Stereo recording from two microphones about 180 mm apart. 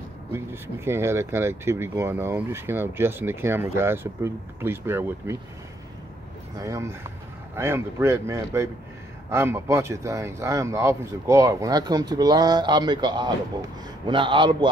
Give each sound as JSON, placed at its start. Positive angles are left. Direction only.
{"t": 0.3, "sound": "speech", "side_deg": -15}
{"t": 6.5, "sound": "speech", "side_deg": -20}